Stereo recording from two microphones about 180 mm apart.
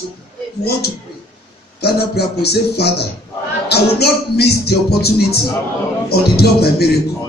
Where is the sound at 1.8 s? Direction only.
60° left (ahead or behind).